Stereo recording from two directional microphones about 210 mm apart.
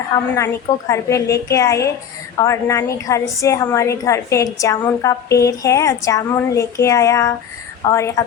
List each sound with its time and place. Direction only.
0.3 s a woman's voice: 15° left (ahead or behind)